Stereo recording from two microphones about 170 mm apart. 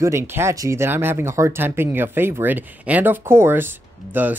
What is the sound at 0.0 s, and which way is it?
Speech, 15° right (ahead or behind).